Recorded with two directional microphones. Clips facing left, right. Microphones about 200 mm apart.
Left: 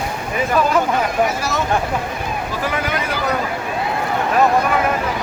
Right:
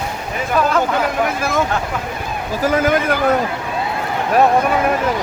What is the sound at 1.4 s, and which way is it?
Speech, 55° right (ahead or behind).